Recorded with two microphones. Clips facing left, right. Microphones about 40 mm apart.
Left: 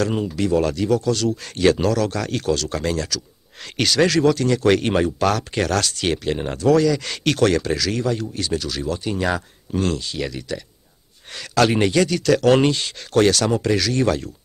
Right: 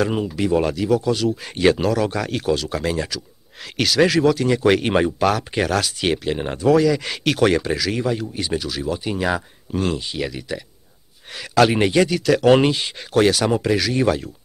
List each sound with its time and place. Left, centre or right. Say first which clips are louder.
0.0 s speech: right 1 dB; centre